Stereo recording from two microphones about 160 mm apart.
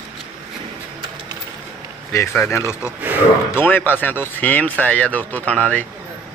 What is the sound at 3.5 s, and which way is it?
Speech, 10° left (ahead or behind).